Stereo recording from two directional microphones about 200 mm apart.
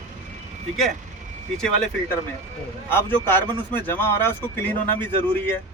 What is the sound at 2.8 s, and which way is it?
Speech, 10° left (ahead or behind).